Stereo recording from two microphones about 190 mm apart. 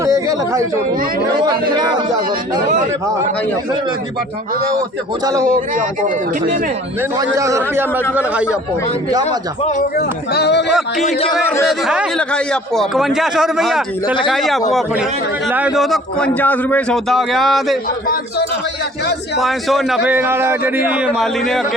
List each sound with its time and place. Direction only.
0.0 s chatter: 15° right (ahead or behind)
5.2 s a man's voice: 15° right (ahead or behind)
7.2 s a man's voice: 15° right (ahead or behind)
9.0 s speech: 20° right (ahead or behind)
9.9 s speech: 55° left (ahead or behind)
10.7 s a man's voice: centre (ahead or behind)
19.4 s a man's voice: centre (ahead or behind)
20.1 s a man's voice: 10° right (ahead or behind)